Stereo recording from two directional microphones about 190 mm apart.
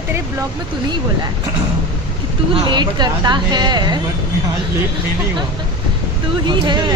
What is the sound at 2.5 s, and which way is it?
Speech, 25° right (ahead or behind).